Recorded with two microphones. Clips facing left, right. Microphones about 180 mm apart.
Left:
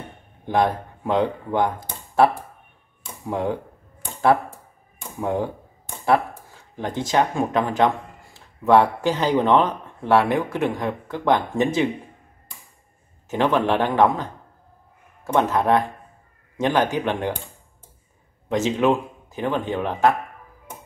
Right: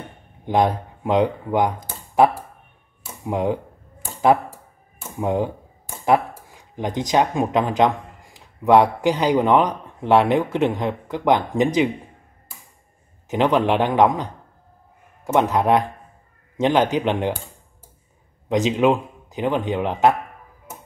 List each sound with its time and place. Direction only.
0.5 s speech: 20° right (ahead or behind)
1.9 s computer keyboard: 15° right (ahead or behind)
3.3 s a man's voice: 20° right (ahead or behind)
5.2 s a man's voice: 20° right (ahead or behind)
6.5 s speech: 15° right (ahead or behind)
13.3 s a man's voice: 15° right (ahead or behind)
18.5 s speech: 15° right (ahead or behind)